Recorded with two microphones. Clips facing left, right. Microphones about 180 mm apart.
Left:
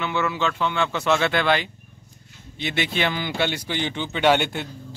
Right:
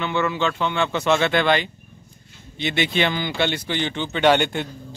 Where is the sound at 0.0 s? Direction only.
5° left (ahead or behind).